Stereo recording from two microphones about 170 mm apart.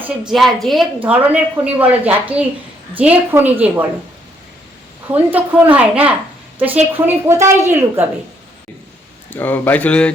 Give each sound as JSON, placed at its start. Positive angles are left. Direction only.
{"t": 0.0, "sound": "a woman's voice", "side_deg": -5}
{"t": 5.1, "sound": "a woman's voice", "side_deg": -10}
{"t": 9.3, "sound": "speech", "side_deg": 10}